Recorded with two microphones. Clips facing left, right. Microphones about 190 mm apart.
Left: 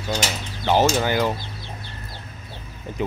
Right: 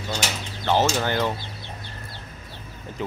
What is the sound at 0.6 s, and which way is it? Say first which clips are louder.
Speech: left 3 dB; 15° left (ahead or behind).